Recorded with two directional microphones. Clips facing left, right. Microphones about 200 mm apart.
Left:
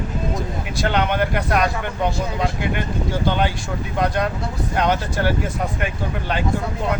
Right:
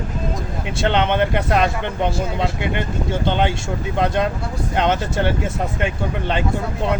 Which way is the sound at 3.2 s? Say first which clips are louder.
Right 1 dB; 20° right (ahead or behind).